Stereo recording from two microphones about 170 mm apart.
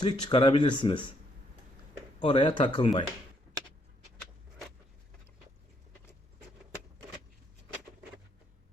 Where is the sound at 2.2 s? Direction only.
30° left (ahead or behind).